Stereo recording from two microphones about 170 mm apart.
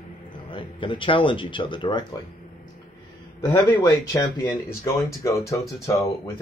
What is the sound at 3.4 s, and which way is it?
Speech, 25° left (ahead or behind).